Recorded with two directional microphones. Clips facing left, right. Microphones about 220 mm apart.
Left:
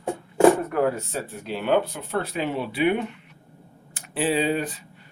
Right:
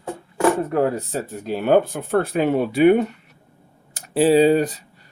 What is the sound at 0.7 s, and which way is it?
Speech, 35° right (ahead or behind).